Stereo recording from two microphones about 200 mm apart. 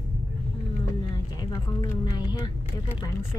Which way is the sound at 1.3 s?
20° left (ahead or behind).